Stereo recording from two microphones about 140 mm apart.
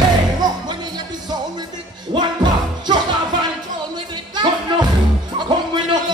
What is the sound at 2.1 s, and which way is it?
Music, 30° right (ahead or behind).